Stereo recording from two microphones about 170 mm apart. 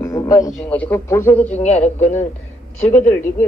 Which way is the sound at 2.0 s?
45° left (ahead or behind).